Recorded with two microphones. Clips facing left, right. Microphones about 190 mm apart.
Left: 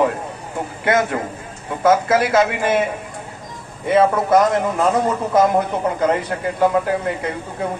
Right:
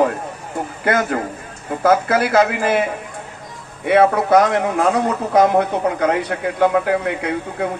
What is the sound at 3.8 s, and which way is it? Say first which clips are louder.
A man's voice: right 1 dB; 70° right (ahead or behind).